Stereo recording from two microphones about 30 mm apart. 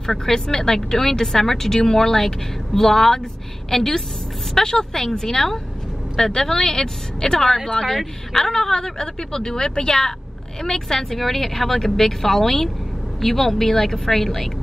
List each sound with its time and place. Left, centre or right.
0.0 s a woman's voice: centre